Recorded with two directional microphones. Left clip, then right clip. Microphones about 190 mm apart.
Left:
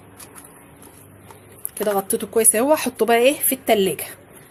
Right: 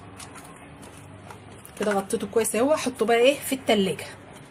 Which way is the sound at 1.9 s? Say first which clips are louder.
Left 4 dB; 40° left (ahead or behind).